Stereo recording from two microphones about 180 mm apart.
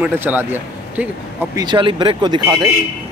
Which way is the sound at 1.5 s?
25° right (ahead or behind).